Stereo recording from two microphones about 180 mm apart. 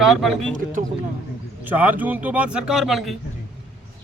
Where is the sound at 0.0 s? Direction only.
Centre (ahead or behind).